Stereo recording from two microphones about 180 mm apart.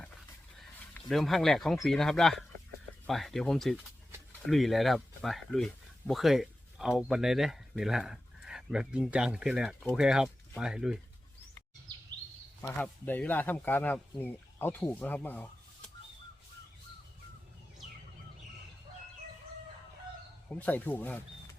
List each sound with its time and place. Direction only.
1.0 s speech: centre (ahead or behind)
12.6 s speech: 10° left (ahead or behind)
20.5 s speech: 10° left (ahead or behind)